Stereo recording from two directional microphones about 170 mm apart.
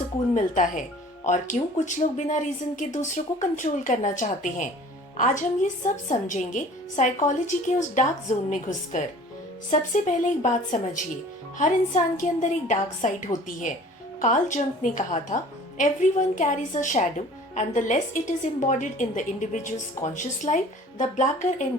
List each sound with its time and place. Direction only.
0.3 s speech: 45° left (ahead or behind)